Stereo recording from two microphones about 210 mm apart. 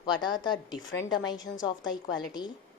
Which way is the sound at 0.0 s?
20° left (ahead or behind).